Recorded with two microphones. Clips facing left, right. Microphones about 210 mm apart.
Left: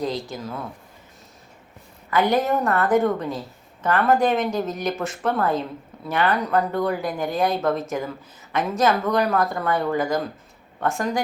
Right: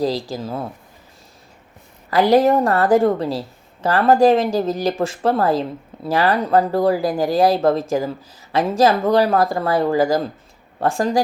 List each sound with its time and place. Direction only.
0.0 s a woman's voice: 30° right (ahead or behind)
2.0 s a woman's voice: 35° right (ahead or behind)